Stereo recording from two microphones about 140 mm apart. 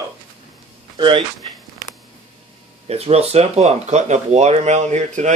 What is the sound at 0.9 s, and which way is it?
Speech, 35° right (ahead or behind).